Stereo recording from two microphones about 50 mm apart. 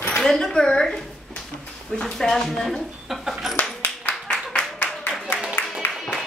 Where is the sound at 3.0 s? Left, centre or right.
Centre.